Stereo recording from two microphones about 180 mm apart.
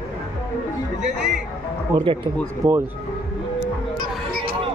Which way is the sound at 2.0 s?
25° right (ahead or behind).